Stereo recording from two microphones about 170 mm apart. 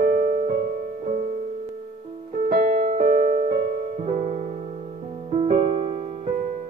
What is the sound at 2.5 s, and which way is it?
Music, 55° right (ahead or behind).